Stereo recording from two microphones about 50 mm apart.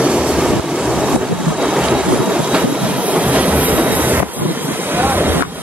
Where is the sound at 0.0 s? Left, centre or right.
Right.